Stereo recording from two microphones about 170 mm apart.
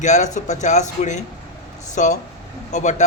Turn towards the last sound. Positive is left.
turn(degrees=45)  # may be behind; listen again after turning